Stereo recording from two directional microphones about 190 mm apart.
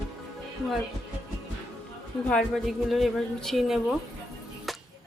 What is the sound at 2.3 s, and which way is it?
Speech, centre (ahead or behind).